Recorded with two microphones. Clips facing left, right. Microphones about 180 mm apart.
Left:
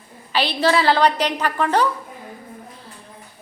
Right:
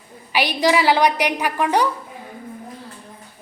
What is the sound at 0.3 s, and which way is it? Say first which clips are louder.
A woman's voice: right 1 dB; 15° right (ahead or behind).